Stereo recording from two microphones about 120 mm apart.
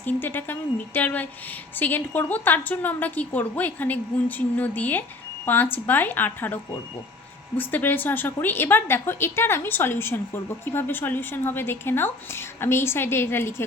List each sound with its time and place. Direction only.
0.0 s a woman's voice: 15° left (ahead or behind)